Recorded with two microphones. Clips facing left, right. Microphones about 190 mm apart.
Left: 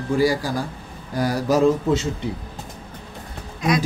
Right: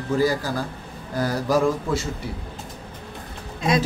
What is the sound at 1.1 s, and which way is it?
Mantra, 15° left (ahead or behind).